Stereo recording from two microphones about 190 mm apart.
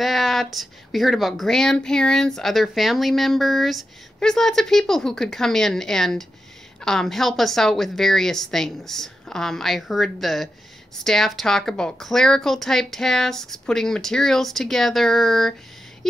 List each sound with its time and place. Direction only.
0.0 s speech: centre (ahead or behind)